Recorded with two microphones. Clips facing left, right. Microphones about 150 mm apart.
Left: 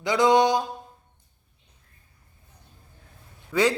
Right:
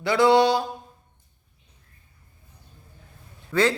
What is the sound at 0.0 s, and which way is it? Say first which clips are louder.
Speech: right 1 dB; 15° left (ahead or behind).